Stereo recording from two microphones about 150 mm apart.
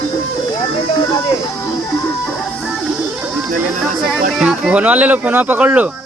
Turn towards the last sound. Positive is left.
turn(degrees=-10)  # may be behind; listen again after turning